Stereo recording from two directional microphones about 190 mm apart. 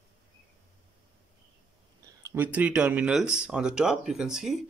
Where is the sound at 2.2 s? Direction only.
10° right (ahead or behind).